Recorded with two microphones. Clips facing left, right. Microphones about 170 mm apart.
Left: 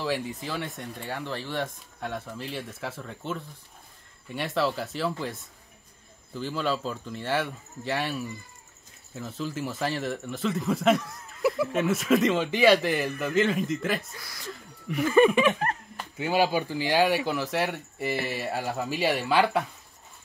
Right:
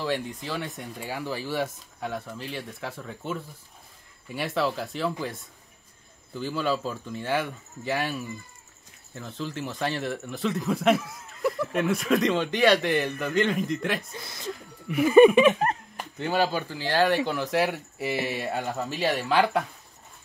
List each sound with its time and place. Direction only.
0.0 s speech: centre (ahead or behind)
6.3 s speech: centre (ahead or behind)
14.1 s speech: 25° right (ahead or behind)
14.5 s a sound: centre (ahead or behind)
15.0 s a sound: 15° right (ahead or behind)
16.2 s speech: 10° left (ahead or behind)
17.3 s speech: centre (ahead or behind)